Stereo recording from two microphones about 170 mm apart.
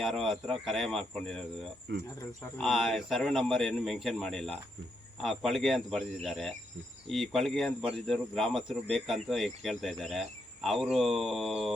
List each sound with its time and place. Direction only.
0.0 s speech: centre (ahead or behind)
1.9 s speech: 90° right
2.6 s speech: centre (ahead or behind)